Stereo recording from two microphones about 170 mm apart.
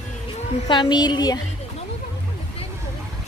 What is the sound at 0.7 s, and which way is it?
Speech, 25° left (ahead or behind).